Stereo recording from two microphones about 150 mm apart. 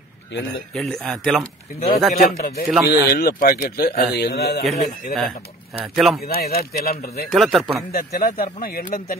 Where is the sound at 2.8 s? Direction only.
90° left.